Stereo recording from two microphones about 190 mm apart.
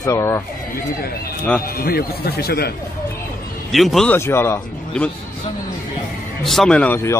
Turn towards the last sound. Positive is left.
turn(degrees=10)  # may be behind; listen again after turning